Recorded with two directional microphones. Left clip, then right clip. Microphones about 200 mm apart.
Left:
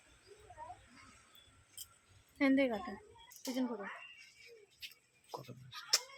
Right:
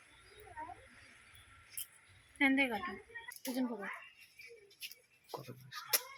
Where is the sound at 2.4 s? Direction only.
55° left (ahead or behind).